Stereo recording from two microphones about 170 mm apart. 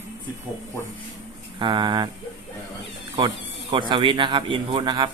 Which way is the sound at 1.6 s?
25° right (ahead or behind).